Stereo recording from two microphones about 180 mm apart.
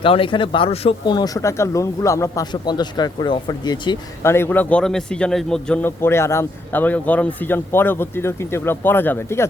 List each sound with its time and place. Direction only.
0.0 s speech: 30° left (ahead or behind)
4.2 s a man's voice: 15° left (ahead or behind)